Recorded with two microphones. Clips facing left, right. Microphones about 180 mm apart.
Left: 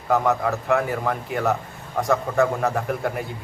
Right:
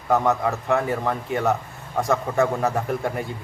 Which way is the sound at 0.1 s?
Centre (ahead or behind).